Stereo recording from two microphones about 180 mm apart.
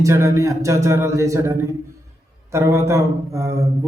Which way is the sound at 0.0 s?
15° right (ahead or behind).